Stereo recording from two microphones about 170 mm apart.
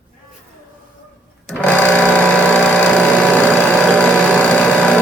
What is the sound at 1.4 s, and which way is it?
Sewing machine, 5° left (ahead or behind).